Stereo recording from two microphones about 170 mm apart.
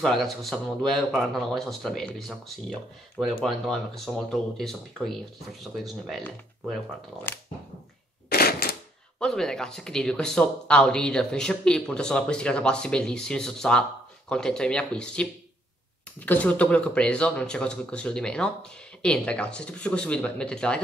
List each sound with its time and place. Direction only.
0.0 s speech: centre (ahead or behind)
8.3 s a sound: 65° left (ahead or behind)
9.2 s speech: 5° left (ahead or behind)